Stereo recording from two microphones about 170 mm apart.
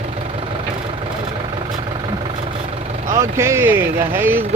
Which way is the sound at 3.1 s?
15° right (ahead or behind).